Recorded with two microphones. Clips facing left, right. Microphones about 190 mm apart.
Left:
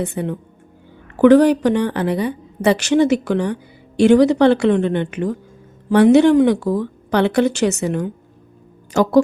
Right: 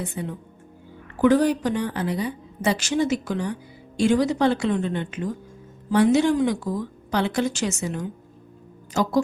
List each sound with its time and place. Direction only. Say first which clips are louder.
0.0 s a woman's voice: left 8 dB; 65° left (ahead or behind)